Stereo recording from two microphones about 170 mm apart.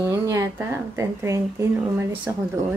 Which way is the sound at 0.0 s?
15° right (ahead or behind).